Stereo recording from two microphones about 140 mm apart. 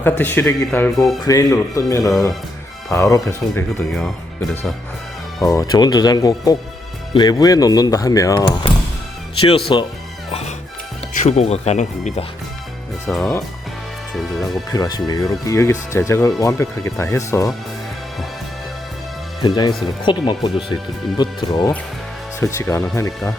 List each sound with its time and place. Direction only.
0.0 s speech: 15° left (ahead or behind)
5.4 s speech: 25° left (ahead or behind)
9.4 s speech: 40° left (ahead or behind)
11.2 s speech: 55° left (ahead or behind)
13.1 s speech: 15° left (ahead or behind)
14.7 s speech: 25° left (ahead or behind)
19.4 s speech: 30° left (ahead or behind)